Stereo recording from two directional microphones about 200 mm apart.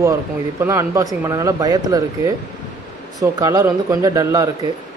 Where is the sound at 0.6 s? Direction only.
15° right (ahead or behind).